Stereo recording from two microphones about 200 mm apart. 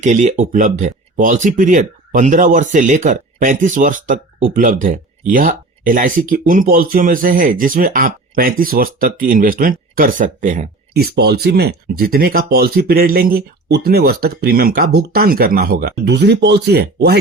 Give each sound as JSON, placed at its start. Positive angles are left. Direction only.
{"t": 0.0, "sound": "speech", "side_deg": -35}